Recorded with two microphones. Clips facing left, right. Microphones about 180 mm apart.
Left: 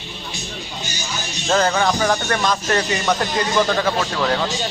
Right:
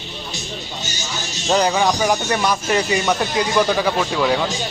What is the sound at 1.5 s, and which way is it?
Speech, 15° right (ahead or behind).